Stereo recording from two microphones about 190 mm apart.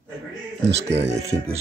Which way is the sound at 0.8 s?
35° right (ahead or behind).